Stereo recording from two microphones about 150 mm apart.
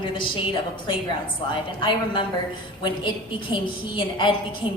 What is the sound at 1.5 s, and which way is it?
A woman's voice, 35° left (ahead or behind).